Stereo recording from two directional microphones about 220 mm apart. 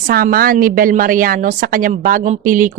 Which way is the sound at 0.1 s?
45° right (ahead or behind).